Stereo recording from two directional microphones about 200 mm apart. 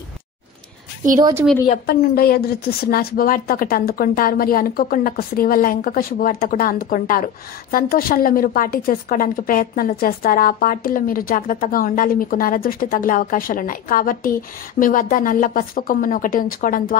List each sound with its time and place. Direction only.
1.9 s a woman's voice: 50° left (ahead or behind)